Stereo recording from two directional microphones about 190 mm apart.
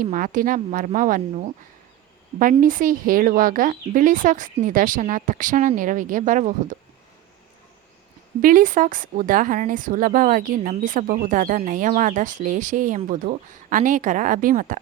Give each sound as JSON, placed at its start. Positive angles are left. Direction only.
{"t": 0.0, "sound": "speech", "side_deg": -45}
{"t": 2.4, "sound": "speech", "side_deg": -45}
{"t": 8.4, "sound": "speech", "side_deg": -45}